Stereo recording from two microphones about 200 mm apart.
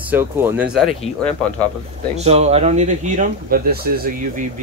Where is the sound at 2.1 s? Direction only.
30° right (ahead or behind).